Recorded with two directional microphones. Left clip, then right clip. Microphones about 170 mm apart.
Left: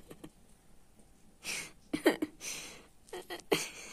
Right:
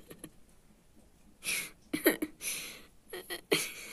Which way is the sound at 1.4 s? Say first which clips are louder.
Right 4 dB; 10° left (ahead or behind).